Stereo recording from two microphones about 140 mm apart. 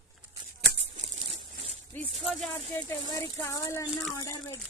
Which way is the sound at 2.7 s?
15° left (ahead or behind).